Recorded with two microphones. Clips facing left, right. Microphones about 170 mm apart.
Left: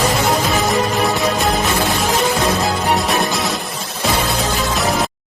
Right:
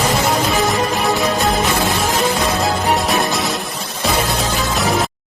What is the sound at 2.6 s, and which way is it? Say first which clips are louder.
Music: even; centre (ahead or behind).